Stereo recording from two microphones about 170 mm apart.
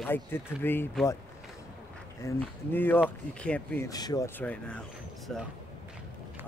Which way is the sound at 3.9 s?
20° left (ahead or behind).